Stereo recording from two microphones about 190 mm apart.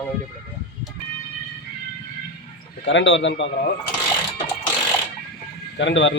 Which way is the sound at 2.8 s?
70° left (ahead or behind).